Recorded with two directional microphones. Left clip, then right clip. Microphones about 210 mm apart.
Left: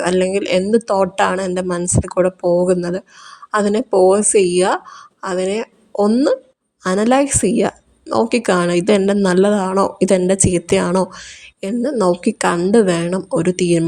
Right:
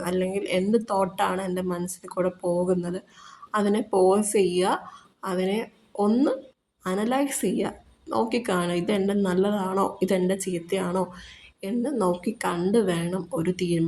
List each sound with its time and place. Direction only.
0.0 s a woman's voice: 40° left (ahead or behind)